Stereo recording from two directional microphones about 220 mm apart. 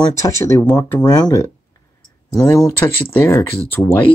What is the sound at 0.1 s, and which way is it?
Speech, 15° left (ahead or behind).